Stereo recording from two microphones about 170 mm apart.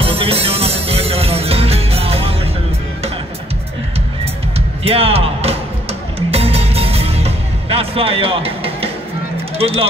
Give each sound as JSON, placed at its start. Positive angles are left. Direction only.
{"t": 0.0, "sound": "music", "side_deg": -35}
{"t": 4.2, "sound": "music", "side_deg": -35}
{"t": 9.6, "sound": "speech", "side_deg": -35}